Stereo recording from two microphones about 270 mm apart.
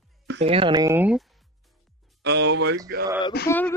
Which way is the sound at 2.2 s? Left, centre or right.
Right.